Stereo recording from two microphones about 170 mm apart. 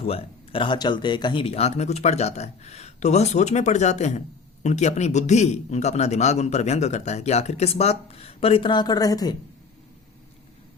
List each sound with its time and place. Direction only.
0.0 s a man's voice: 35° left (ahead or behind)